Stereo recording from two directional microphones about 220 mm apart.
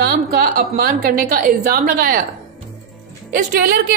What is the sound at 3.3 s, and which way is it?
Speech, 40° right (ahead or behind).